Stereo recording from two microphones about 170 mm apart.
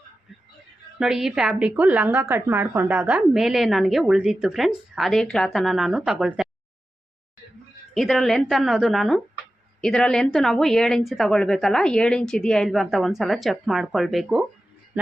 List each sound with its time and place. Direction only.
0.9 s a woman's voice: 5° right (ahead or behind)
7.9 s a woman's voice: centre (ahead or behind)